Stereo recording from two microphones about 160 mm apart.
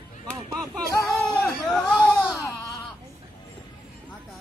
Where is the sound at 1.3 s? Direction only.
Centre (ahead or behind).